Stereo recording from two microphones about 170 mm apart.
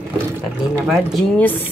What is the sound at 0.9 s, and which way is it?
Speech, centre (ahead or behind).